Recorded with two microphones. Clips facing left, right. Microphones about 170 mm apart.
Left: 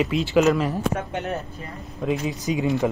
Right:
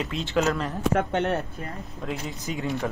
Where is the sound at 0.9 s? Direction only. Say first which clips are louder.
Right 3 dB; 75° right (ahead or behind).